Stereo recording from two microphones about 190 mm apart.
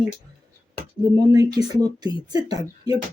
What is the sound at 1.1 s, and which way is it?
Speech, 20° right (ahead or behind).